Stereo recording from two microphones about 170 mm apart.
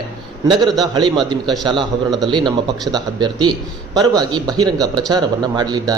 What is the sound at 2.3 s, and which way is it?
Speech, 25° right (ahead or behind).